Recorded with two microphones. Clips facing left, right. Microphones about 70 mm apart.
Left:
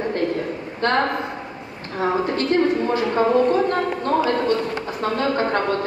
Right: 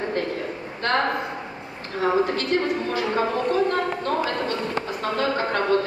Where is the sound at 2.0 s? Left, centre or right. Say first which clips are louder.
Left 1 dB; left.